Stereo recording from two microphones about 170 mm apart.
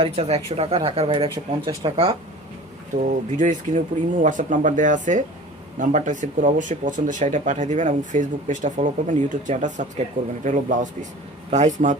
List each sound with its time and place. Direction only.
0.0 s speech: 35° right (ahead or behind)
3.3 s speech: 45° right (ahead or behind)